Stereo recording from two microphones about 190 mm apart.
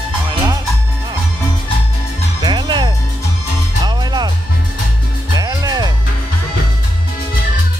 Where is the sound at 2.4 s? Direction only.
25° right (ahead or behind).